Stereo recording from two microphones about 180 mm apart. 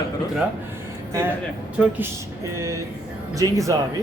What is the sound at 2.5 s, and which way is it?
Speech, 15° right (ahead or behind).